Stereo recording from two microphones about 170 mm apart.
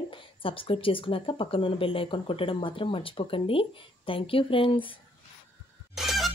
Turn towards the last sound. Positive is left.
turn(degrees=0)  # may be behind; listen again after turning